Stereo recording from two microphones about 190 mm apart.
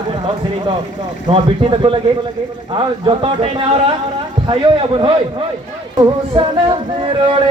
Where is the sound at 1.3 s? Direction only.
25° right (ahead or behind).